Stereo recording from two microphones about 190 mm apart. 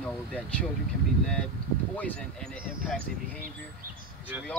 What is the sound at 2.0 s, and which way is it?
Speech, 5° left (ahead or behind).